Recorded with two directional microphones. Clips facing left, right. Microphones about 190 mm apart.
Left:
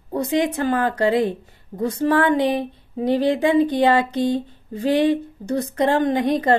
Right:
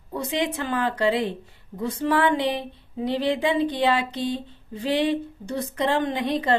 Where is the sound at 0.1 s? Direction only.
45° left (ahead or behind).